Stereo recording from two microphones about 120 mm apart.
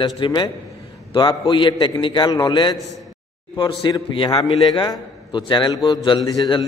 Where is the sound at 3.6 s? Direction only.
45° left (ahead or behind).